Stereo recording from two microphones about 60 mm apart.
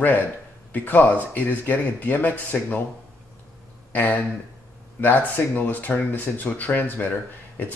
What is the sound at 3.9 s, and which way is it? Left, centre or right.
Speech, left.